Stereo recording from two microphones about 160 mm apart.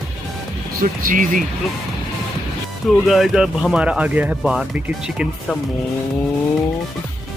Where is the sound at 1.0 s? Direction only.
60° right (ahead or behind).